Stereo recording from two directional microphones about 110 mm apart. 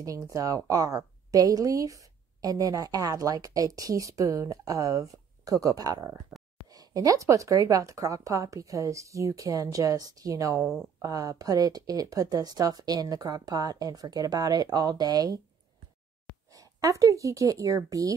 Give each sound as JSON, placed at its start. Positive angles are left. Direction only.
{"t": 0.0, "sound": "a woman's voice", "side_deg": -30}
{"t": 6.3, "sound": "a sound", "side_deg": -5}
{"t": 6.7, "sound": "a woman's voice", "side_deg": -35}
{"t": 16.4, "sound": "speech", "side_deg": -30}